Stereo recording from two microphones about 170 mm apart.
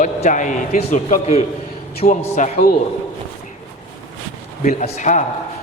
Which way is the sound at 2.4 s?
45° left (ahead or behind).